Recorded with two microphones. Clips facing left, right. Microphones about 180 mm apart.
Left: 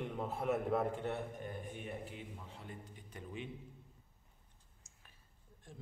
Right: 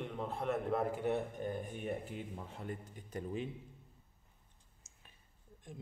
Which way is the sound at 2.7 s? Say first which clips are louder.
Right 7 dB; 45° right (ahead or behind).